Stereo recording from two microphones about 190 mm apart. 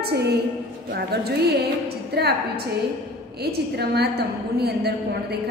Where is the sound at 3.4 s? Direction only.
60° right (ahead or behind).